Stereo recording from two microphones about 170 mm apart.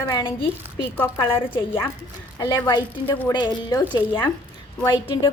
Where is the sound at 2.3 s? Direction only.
25° left (ahead or behind).